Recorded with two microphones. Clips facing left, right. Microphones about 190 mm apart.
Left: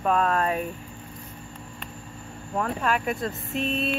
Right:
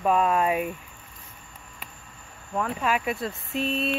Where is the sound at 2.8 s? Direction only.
5° right (ahead or behind).